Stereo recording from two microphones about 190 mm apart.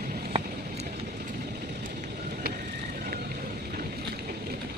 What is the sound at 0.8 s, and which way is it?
Vehicle, 55° right (ahead or behind).